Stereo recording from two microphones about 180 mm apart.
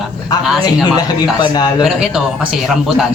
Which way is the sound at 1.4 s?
20° left (ahead or behind).